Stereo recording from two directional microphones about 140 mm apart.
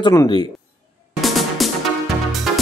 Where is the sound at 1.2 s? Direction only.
Centre (ahead or behind).